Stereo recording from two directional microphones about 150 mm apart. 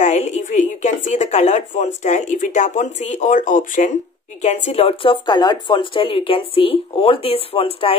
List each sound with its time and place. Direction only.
0.0 s a woman's voice: 50° left (ahead or behind)
4.4 s speech: 45° left (ahead or behind)